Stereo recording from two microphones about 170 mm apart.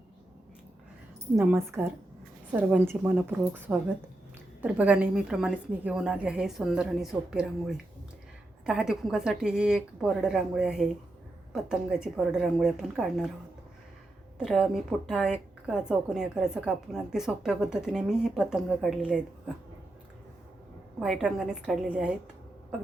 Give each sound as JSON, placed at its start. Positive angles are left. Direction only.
{"t": 1.4, "sound": "a woman's voice", "side_deg": -15}
{"t": 14.3, "sound": "a woman's voice", "side_deg": -5}
{"t": 21.0, "sound": "a woman's voice", "side_deg": -5}